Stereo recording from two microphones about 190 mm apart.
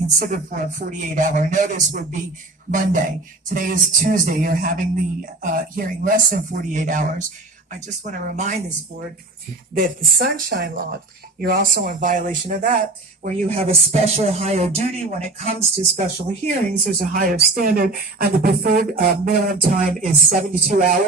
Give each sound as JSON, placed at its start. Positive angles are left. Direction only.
{"t": 0.2, "sound": "speech", "side_deg": -45}
{"t": 9.8, "sound": "speech", "side_deg": -50}
{"t": 13.6, "sound": "speech", "side_deg": -30}
{"t": 16.7, "sound": "speech", "side_deg": -50}